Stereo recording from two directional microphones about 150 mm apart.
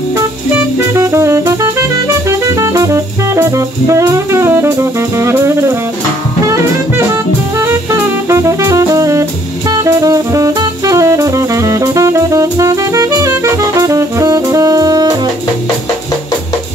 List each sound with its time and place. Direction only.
0.9 s music: 20° right (ahead or behind)
6.4 s jazz: 20° right (ahead or behind)
7.5 s music: 20° right (ahead or behind)
9.7 s jazz: 25° right (ahead or behind)